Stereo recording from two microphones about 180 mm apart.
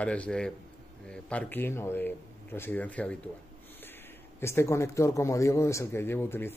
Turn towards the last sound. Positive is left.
turn(degrees=15)  # may be behind; listen again after turning